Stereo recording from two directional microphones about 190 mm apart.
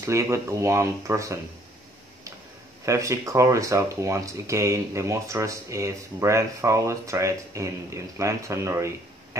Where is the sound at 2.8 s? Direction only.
15° right (ahead or behind).